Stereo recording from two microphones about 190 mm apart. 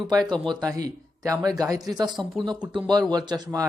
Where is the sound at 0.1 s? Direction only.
20° right (ahead or behind).